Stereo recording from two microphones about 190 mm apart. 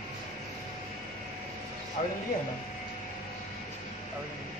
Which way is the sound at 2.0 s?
40° left (ahead or behind).